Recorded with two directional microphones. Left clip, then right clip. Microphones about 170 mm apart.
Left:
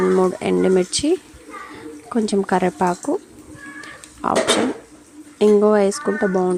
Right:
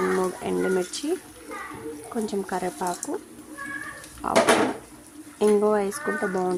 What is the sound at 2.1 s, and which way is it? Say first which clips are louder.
Speech: left 10 dB; 35° left (ahead or behind).